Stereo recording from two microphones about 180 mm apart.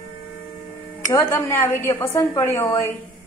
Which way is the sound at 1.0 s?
20° left (ahead or behind).